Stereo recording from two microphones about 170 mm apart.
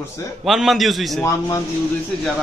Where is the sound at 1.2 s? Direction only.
20° left (ahead or behind).